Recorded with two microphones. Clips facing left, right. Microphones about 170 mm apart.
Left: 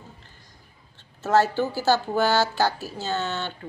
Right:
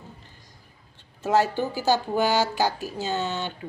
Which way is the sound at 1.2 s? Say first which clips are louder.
Left 1 dB; 10° right (ahead or behind).